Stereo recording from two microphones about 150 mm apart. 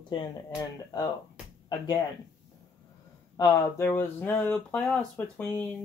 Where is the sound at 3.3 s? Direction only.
20° left (ahead or behind).